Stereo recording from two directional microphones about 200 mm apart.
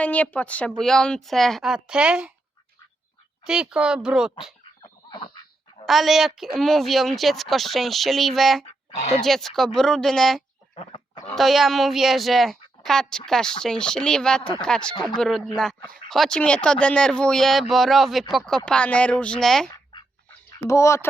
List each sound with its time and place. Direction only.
0.0 s speech: 5° left (ahead or behind)
3.4 s speech: 5° right (ahead or behind)
5.1 s a sound: 20° left (ahead or behind)
5.8 s speech: centre (ahead or behind)
10.8 s goat: 25° left (ahead or behind)
11.3 s speech: centre (ahead or behind)
19.7 s duck: 20° left (ahead or behind)
20.5 s speech: 15° left (ahead or behind)